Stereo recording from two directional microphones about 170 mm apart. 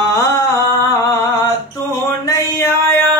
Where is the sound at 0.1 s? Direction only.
15° left (ahead or behind).